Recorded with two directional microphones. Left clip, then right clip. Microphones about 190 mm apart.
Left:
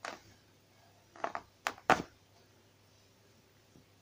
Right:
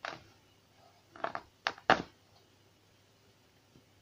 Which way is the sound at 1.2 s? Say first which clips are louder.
Right 1 dB; 5° left (ahead or behind).